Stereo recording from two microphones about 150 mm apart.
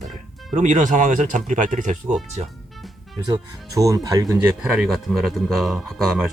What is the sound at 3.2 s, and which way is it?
Speech, 25° right (ahead or behind).